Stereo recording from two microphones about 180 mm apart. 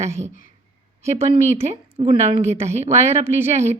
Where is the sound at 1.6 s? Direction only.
35° right (ahead or behind).